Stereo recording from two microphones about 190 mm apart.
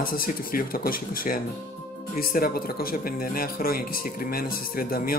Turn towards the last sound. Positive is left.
turn(degrees=50)  # may be behind; listen again after turning